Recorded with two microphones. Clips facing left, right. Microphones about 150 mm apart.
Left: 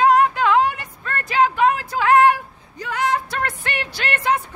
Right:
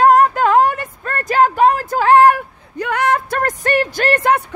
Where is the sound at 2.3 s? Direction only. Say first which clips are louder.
Right 8 dB; 60° right (ahead or behind); by 4.3 s 45° right (ahead or behind).